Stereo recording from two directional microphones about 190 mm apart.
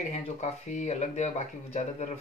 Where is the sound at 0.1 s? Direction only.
35° left (ahead or behind).